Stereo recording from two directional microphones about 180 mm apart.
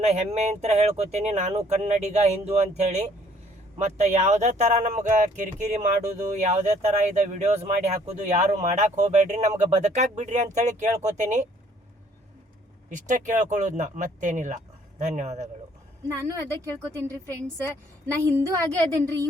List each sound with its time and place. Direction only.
0.0 s speech: 35° right (ahead or behind)
12.9 s speech: 45° right (ahead or behind)
16.0 s speech: 15° right (ahead or behind)
18.2 s speech: 15° right (ahead or behind)